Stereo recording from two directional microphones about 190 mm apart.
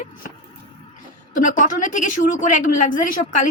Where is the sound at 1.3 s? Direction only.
45° left (ahead or behind).